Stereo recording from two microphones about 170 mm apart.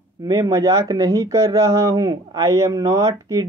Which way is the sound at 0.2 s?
20° right (ahead or behind).